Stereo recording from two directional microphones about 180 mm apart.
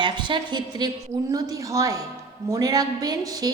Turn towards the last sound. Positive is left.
turn(degrees=-20)  # may be behind; listen again after turning